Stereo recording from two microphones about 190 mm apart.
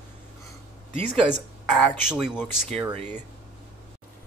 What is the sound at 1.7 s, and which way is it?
Speech, 5° right (ahead or behind).